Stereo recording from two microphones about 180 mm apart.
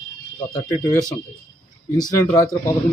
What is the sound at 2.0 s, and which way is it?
Speech, 20° left (ahead or behind).